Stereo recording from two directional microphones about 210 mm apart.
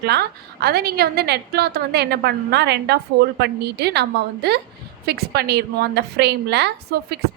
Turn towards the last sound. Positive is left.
turn(degrees=-50)  # may be behind; listen again after turning